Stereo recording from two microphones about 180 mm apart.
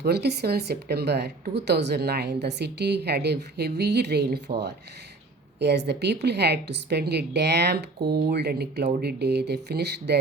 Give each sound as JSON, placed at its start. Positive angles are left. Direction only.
{"t": 0.0, "sound": "a woman's voice", "side_deg": -65}
{"t": 5.5, "sound": "a woman's voice", "side_deg": -70}